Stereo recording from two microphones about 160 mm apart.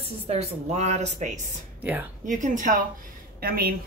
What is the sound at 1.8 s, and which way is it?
Speech, 10° right (ahead or behind).